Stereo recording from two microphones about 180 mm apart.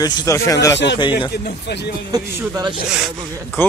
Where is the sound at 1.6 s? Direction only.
70° left (ahead or behind).